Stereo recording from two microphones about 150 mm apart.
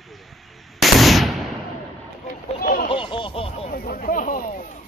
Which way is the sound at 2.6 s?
80° left.